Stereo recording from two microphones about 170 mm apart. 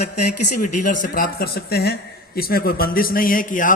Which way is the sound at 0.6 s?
50° left (ahead or behind).